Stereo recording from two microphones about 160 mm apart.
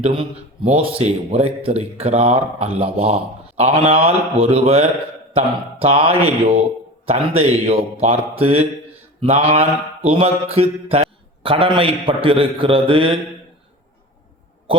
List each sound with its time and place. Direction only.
0.0 s mantra: 35° right (ahead or behind)